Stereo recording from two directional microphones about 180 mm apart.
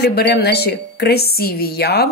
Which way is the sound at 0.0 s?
65° left (ahead or behind).